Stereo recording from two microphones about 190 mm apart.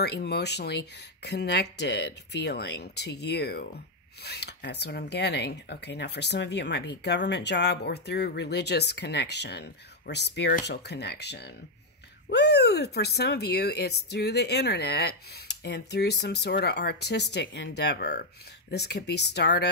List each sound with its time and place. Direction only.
0.0 s speech: 60° left (ahead or behind)